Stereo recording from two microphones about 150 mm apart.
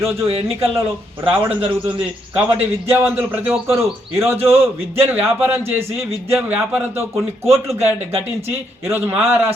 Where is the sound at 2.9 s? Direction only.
15° right (ahead or behind).